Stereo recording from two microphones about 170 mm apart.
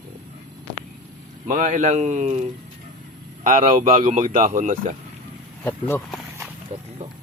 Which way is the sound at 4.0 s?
50° right (ahead or behind).